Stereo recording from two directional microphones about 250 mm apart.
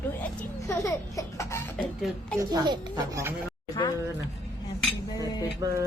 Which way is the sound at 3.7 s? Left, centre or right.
Centre.